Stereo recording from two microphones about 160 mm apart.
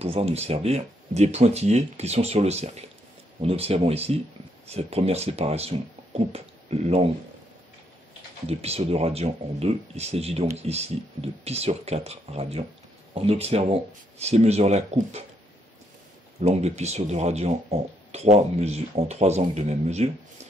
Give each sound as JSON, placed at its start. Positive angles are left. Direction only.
{"t": 0.0, "sound": "speech", "side_deg": -40}
{"t": 8.5, "sound": "speech", "side_deg": -40}
{"t": 16.3, "sound": "speech", "side_deg": -45}